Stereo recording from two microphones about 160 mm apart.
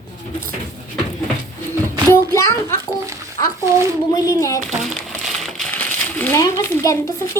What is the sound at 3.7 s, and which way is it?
Speech, 15° right (ahead or behind).